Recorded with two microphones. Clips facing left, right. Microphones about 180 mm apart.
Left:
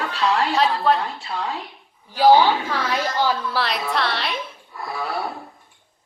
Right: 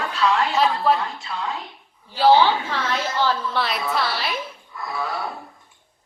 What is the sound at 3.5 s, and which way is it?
Speech, centre (ahead or behind).